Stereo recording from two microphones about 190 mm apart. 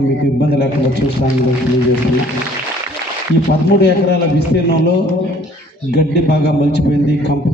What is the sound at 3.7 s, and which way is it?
Speech, 60° left (ahead or behind).